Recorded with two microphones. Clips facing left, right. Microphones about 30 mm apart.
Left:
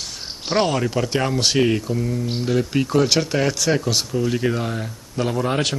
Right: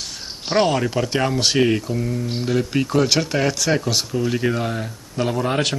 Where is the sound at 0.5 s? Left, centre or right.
Centre.